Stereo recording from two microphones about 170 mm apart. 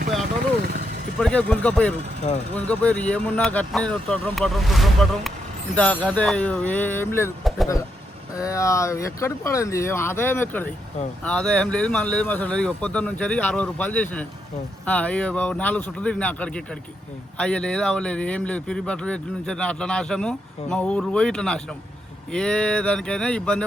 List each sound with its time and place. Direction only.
1.2 s speech: 5° left (ahead or behind)
2.3 s speech: 40° left (ahead or behind)
2.6 s speech: 10° left (ahead or behind)
7.5 s vehicle: centre (ahead or behind)
8.4 s speech: 20° left (ahead or behind)